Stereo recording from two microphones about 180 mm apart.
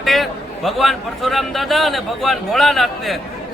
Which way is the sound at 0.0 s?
Centre (ahead or behind).